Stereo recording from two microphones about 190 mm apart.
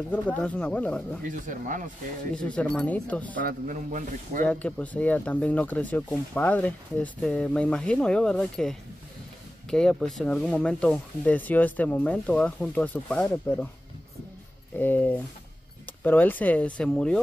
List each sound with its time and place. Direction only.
0.4 s speech: 5° left (ahead or behind)
1.3 s a man's voice: 45° right (ahead or behind)
2.3 s speech: 5° left (ahead or behind)
3.3 s a man's voice: 45° right (ahead or behind)
4.5 s speech: 5° left (ahead or behind)
14.8 s speech: 10° left (ahead or behind)